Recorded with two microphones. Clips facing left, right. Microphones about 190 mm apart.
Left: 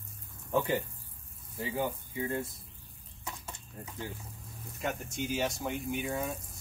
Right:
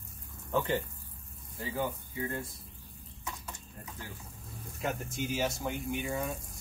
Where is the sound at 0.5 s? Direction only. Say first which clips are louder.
Left 1 dB; 10° left (ahead or behind).